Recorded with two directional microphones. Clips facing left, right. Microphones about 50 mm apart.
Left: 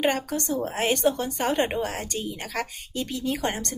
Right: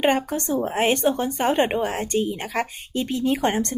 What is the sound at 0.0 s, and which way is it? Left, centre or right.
A woman's voice, right.